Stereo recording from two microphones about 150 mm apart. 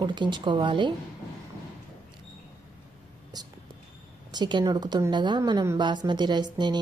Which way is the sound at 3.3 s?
25° right (ahead or behind).